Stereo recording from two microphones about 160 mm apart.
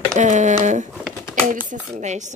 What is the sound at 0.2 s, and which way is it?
Speech, 50° right (ahead or behind).